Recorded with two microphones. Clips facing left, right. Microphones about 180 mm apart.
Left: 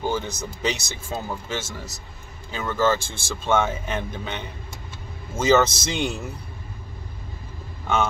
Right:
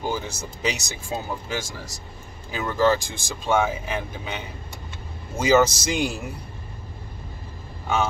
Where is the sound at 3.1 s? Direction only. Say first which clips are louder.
Left 1 dB; 15° right (ahead or behind).